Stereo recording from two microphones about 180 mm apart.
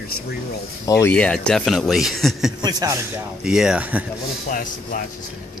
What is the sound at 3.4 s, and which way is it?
Speech, 5° right (ahead or behind).